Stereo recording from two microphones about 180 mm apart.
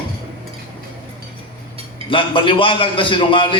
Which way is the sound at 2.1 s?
30° left (ahead or behind).